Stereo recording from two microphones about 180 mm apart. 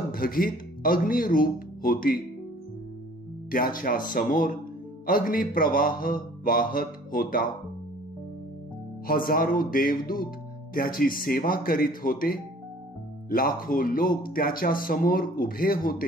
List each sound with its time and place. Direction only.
0.1 s speech: 50° left (ahead or behind)
3.5 s speech: 50° left (ahead or behind)
9.0 s speech: 50° left (ahead or behind)